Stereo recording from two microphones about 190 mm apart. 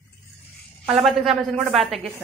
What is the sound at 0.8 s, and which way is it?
A woman's voice, centre (ahead or behind).